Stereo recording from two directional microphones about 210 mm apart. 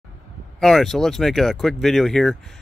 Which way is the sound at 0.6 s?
Centre (ahead or behind).